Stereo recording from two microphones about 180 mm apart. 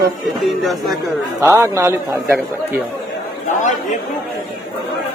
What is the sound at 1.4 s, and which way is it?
A man's voice, 15° right (ahead or behind).